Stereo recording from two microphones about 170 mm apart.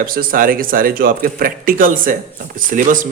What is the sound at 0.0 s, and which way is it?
Speech, 60° right (ahead or behind).